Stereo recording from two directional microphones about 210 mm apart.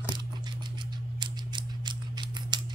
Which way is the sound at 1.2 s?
20° right (ahead or behind).